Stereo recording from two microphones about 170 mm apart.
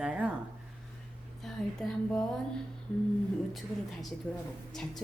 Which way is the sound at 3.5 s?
Centre (ahead or behind).